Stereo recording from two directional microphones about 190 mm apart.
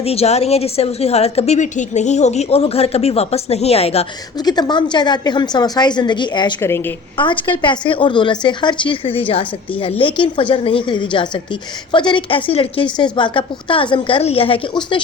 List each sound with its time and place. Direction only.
0.0 s a woman's voice: 30° left (ahead or behind)
4.4 s a woman's voice: 20° left (ahead or behind)
7.2 s a woman's voice: 25° left (ahead or behind)